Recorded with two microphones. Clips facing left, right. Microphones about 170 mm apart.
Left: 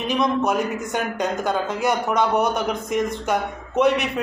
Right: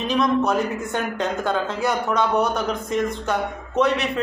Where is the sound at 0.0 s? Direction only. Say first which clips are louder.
Right 1 dB; 15° left (ahead or behind).